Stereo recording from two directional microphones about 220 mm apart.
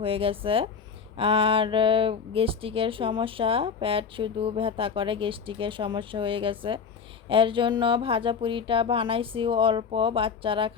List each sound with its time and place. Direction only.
0.0 s speech: 25° right (ahead or behind)